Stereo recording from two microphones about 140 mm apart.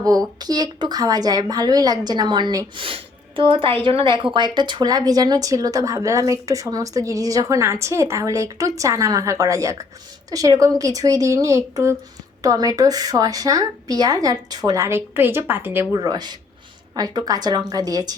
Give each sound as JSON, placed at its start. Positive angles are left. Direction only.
{"t": 0.3, "sound": "a woman's voice", "side_deg": -30}
{"t": 16.0, "sound": "speech", "side_deg": -30}